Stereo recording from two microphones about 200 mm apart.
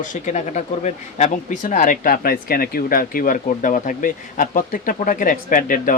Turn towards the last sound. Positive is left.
turn(degrees=45)  # may be behind; listen again after turning